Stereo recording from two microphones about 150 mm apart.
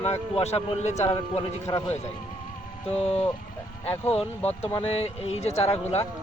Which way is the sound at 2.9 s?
40° left (ahead or behind).